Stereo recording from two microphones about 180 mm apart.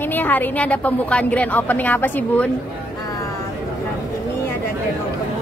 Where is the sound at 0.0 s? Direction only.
10° left (ahead or behind).